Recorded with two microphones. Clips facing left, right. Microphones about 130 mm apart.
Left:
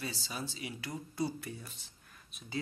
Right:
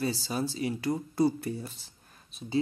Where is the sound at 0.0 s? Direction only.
35° right (ahead or behind).